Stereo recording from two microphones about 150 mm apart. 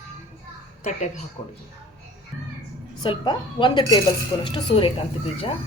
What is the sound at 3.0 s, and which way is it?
A woman's voice, 30° left (ahead or behind).